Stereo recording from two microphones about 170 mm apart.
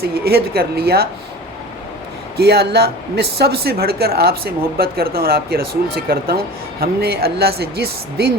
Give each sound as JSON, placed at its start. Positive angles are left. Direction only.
{"t": 0.0, "sound": "a woman's voice", "side_deg": -65}
{"t": 2.4, "sound": "speech", "side_deg": -70}